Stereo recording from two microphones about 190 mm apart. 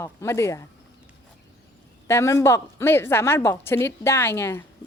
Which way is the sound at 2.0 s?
15° left (ahead or behind).